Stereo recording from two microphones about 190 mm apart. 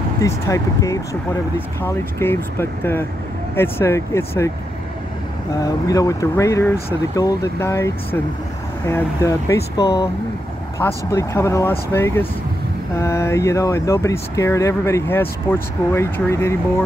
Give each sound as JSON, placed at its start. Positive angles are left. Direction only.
{"t": 0.2, "sound": "speech", "side_deg": 15}
{"t": 5.6, "sound": "speech", "side_deg": 20}